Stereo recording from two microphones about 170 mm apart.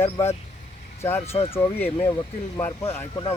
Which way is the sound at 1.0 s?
15° left (ahead or behind).